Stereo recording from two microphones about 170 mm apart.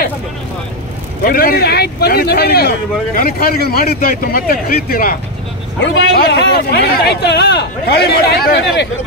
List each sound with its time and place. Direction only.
1.2 s speech: 60° left (ahead or behind)
5.8 s speech: 85° left